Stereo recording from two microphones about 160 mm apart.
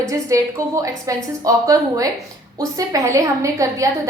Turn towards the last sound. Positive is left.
turn(degrees=-20)  # may be behind; listen again after turning